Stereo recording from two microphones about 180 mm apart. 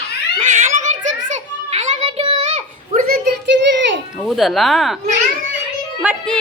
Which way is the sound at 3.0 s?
55° right (ahead or behind).